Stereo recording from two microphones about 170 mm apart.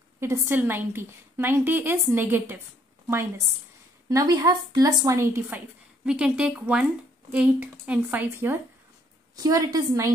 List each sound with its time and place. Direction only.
0.2 s a woman's voice: 15° right (ahead or behind)
4.1 s a woman's voice: 20° right (ahead or behind)